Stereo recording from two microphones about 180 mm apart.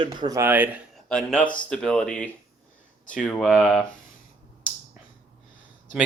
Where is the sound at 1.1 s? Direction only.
5° left (ahead or behind).